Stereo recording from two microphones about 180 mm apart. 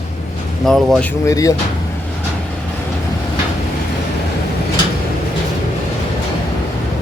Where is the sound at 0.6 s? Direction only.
Centre (ahead or behind).